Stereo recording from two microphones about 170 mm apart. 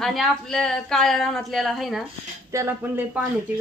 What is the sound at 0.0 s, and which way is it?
Speech, centre (ahead or behind).